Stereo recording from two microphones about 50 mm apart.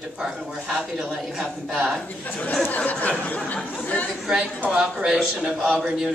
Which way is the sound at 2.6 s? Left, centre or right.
Left.